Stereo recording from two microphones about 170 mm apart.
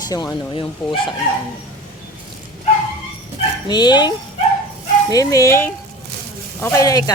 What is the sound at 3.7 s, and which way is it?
Speech, 25° left (ahead or behind).